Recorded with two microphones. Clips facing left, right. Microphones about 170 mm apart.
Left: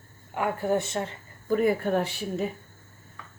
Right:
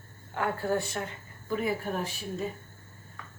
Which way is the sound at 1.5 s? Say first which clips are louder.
Left 7 dB; 50° left (ahead or behind).